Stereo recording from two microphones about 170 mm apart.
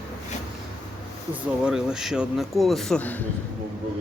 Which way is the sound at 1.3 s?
5° right (ahead or behind).